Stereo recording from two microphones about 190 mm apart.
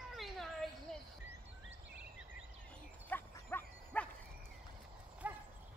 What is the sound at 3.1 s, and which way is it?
Dog, 10° left (ahead or behind).